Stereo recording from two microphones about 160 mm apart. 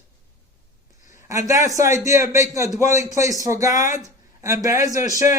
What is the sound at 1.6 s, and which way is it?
A man's voice, 20° right (ahead or behind).